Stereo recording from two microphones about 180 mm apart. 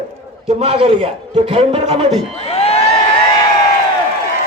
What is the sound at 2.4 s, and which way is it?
Crowd, 35° left (ahead or behind).